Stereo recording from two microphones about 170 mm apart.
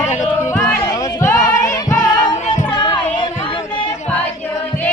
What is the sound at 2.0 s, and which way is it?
Music, 25° left (ahead or behind).